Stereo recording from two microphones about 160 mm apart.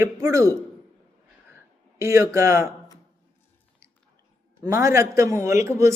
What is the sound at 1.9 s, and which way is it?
Speech, 20° right (ahead or behind).